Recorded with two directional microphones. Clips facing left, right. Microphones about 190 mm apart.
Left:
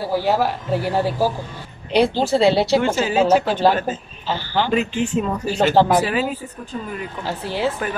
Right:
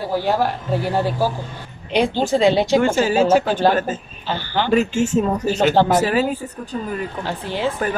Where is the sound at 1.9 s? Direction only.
35° left (ahead or behind).